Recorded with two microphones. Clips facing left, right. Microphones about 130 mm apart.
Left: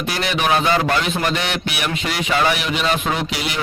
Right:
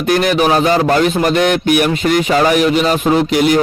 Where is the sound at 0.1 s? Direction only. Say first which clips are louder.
Right 8 dB; 50° right (ahead or behind).